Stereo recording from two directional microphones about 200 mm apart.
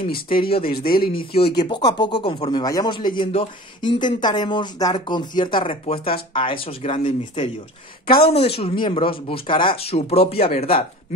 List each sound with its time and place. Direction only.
0.1 s speech: 45° left (ahead or behind)
0.5 s speech: 30° left (ahead or behind)
0.7 s speech: 50° left (ahead or behind)
1.3 s speech: 30° left (ahead or behind)